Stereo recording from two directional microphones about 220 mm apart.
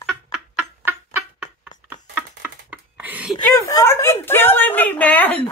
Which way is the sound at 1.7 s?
35° left (ahead or behind).